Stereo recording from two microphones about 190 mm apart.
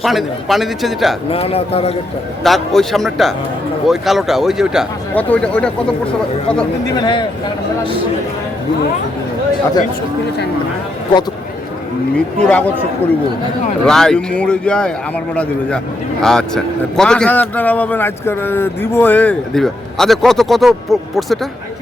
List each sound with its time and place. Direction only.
0.0 s speech: centre (ahead or behind)
1.3 s a man's voice: 30° left (ahead or behind)
2.4 s speech: centre (ahead or behind)
6.9 s a man's voice: 25° left (ahead or behind)
12.1 s speech: 5° left (ahead or behind)
13.8 s speech: 5° left (ahead or behind)
16.2 s speech: 5° left (ahead or behind)